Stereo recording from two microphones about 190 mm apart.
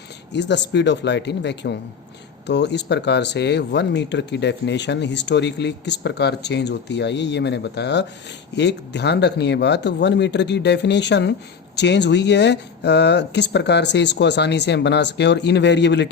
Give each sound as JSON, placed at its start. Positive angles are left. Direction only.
{"t": 0.3, "sound": "speech", "side_deg": 65}